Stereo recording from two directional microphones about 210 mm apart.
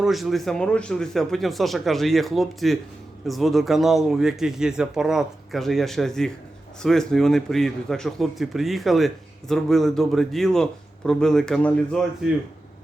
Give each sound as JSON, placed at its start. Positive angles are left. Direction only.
{"t": 0.0, "sound": "a man's voice", "side_deg": 0}